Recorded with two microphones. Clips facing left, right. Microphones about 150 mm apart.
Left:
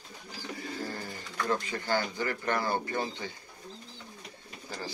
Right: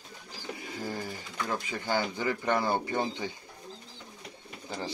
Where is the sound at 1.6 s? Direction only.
15° right (ahead or behind).